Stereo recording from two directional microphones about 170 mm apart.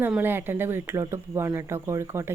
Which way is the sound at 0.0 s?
10° right (ahead or behind).